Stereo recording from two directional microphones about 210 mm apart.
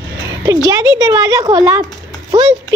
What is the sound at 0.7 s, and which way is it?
Speech, 20° right (ahead or behind).